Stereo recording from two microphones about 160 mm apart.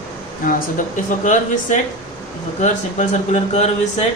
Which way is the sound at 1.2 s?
50° left (ahead or behind).